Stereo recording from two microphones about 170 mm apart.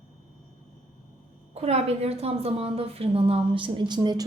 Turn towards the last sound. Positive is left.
turn(degrees=-25)  # may be behind; listen again after turning